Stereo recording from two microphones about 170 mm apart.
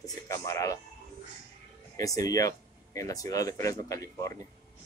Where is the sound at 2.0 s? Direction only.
20° left (ahead or behind).